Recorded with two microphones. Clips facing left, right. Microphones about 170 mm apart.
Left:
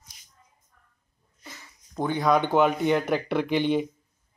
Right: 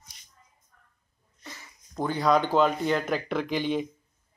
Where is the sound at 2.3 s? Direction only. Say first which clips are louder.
Left 1 dB; 15° left (ahead or behind).